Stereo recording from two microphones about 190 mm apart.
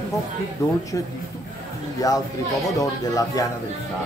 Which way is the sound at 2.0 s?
20° left (ahead or behind).